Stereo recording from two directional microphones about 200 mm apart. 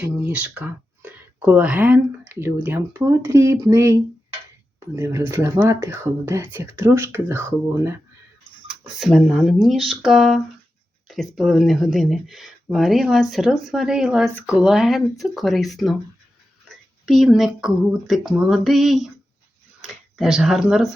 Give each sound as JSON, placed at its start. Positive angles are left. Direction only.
{"t": 0.2, "sound": "speech", "side_deg": -5}
{"t": 9.0, "sound": "speech", "side_deg": 0}